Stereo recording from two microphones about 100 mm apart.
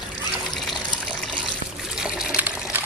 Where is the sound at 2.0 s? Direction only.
15° right (ahead or behind).